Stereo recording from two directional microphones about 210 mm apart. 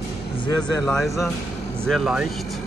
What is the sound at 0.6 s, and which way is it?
Speech, 5° left (ahead or behind).